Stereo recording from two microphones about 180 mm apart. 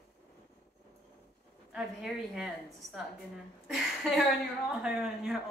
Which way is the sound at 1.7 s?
5° right (ahead or behind).